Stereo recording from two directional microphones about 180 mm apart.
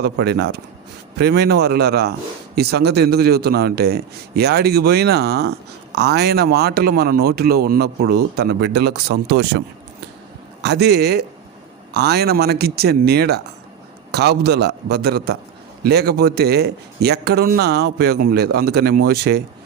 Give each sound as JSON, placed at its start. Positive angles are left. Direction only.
{"t": 0.0, "sound": "a man's voice", "side_deg": -65}
{"t": 10.6, "sound": "speech", "side_deg": -70}